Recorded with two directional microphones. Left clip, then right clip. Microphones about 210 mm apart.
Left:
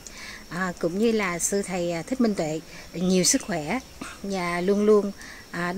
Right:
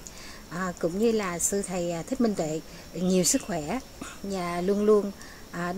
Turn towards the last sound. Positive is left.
turn(degrees=40)  # may be behind; listen again after turning